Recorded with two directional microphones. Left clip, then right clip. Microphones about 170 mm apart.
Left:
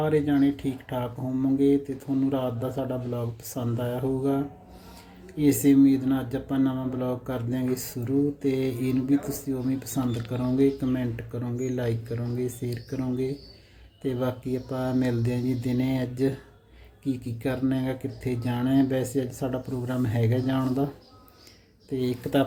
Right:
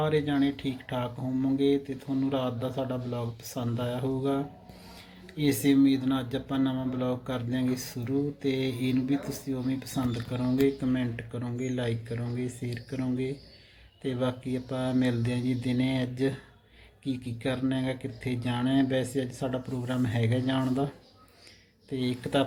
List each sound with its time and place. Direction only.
0.0 s speech: 10° left (ahead or behind)
21.9 s speech: 10° left (ahead or behind)